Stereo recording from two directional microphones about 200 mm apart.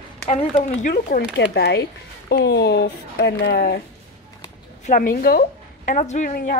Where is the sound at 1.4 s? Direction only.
55° left (ahead or behind).